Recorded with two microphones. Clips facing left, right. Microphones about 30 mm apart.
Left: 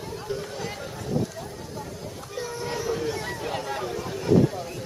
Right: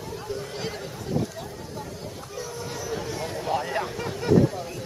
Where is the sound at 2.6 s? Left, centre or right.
Left.